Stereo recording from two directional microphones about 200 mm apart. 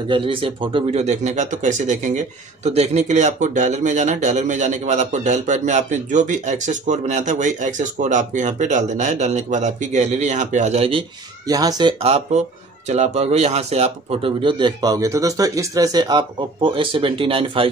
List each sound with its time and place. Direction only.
0.1 s speech: 25° right (ahead or behind)
12.0 s speech: 35° right (ahead or behind)